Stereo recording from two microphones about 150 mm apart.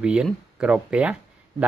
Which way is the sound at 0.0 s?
5° right (ahead or behind).